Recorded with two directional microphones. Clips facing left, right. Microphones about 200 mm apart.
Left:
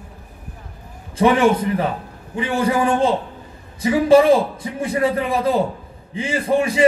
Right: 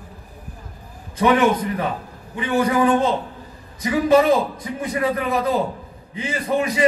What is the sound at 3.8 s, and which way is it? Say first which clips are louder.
A man's voice: left 3 dB; 30° left (ahead or behind).